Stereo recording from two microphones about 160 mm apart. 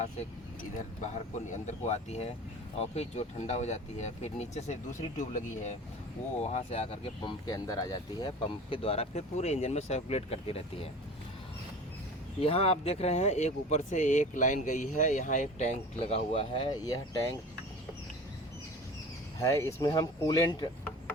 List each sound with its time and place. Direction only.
1.1 s speech: 50° left (ahead or behind)
6.4 s speech: 40° left (ahead or behind); by 8.3 s 25° left (ahead or behind)
8.7 s speech: 35° left (ahead or behind)
12.4 s speech: 35° left (ahead or behind)
19.4 s speech: 20° left (ahead or behind)